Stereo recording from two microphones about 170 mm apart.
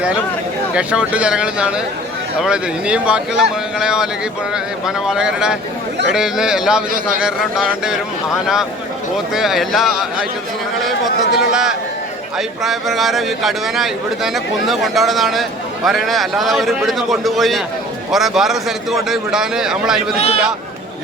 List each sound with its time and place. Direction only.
0.7 s a man's voice: 5° right (ahead or behind)
9.1 s a man's voice: centre (ahead or behind)
11.5 s a man's voice: 5° right (ahead or behind)
20.1 s a man's voice: 35° left (ahead or behind)